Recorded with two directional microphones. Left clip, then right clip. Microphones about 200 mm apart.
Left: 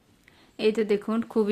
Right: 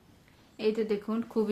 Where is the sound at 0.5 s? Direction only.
40° left (ahead or behind).